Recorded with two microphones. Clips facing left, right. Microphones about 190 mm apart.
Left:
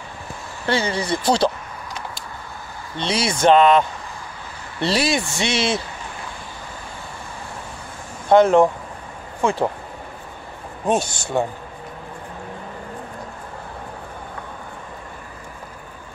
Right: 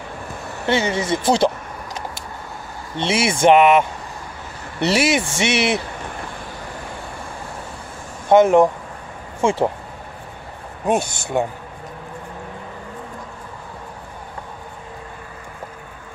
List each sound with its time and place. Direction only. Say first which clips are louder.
0.7 s speech: right 2 dB; 20° right (ahead or behind)
3.0 s speech: right 2 dB; 25° right (ahead or behind)
8.3 s speech: right 1 dB; 15° right (ahead or behind)
9.4 s speech: right 2 dB; 25° right (ahead or behind)
10.9 s speech: right 1 dB; 15° right (ahead or behind)